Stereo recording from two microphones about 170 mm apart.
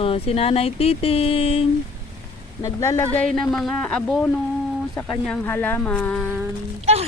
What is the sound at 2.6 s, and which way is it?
Speech, 15° left (ahead or behind).